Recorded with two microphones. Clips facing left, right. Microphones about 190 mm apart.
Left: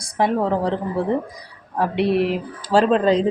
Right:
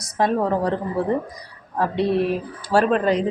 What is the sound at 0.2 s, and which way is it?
Speech, 10° left (ahead or behind).